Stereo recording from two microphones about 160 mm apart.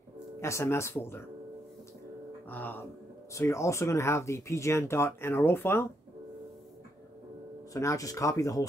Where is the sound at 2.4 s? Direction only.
10° left (ahead or behind).